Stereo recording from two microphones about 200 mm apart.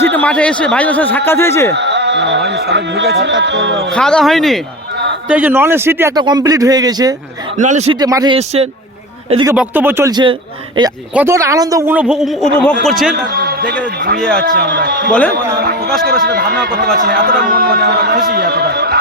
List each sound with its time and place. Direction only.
0.0 s speech: 10° left (ahead or behind)
1.7 s music: 60° right (ahead or behind)
2.5 s speech: 55° right (ahead or behind)
3.9 s speech: 5° left (ahead or behind)
5.3 s a man's voice: 10° right (ahead or behind)
7.5 s speech: 35° right (ahead or behind)
7.9 s speech: 20° right (ahead or behind)
8.4 s speech: 30° right (ahead or behind)
9.3 s a man's voice: 20° right (ahead or behind)
11.1 s a man's voice: 10° right (ahead or behind)
13.3 s a sound: 50° right (ahead or behind)
14.2 s speech: 5° left (ahead or behind)
14.4 s a sound: 55° right (ahead or behind)